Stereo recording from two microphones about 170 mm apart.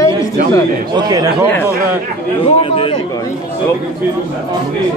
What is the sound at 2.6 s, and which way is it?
Speech, 35° left (ahead or behind).